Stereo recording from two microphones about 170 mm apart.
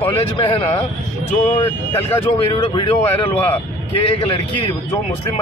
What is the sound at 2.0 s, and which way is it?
Speech, 30° left (ahead or behind).